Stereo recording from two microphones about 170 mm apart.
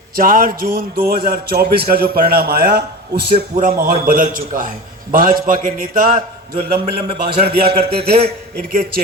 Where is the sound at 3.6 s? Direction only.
55° right (ahead or behind).